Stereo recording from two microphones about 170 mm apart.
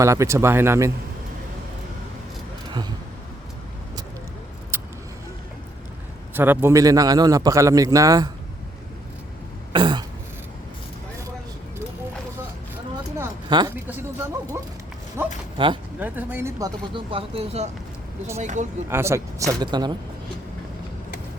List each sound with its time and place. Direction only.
0.0 s speech: 15° right (ahead or behind)
4.7 s vehicle: 15° right (ahead or behind)
6.3 s a man's voice: 10° right (ahead or behind)
9.7 s a man's voice: 30° right (ahead or behind)
13.5 s a man's voice: 25° right (ahead or behind)
13.8 s a sound: 10° right (ahead or behind)
15.5 s speech: 30° right (ahead or behind)
16.0 s speech: 10° right (ahead or behind)
17.1 s speech: 35° right (ahead or behind)
18.9 s a man's voice: 15° right (ahead or behind)